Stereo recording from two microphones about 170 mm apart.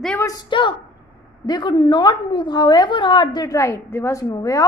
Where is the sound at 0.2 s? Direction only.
20° left (ahead or behind).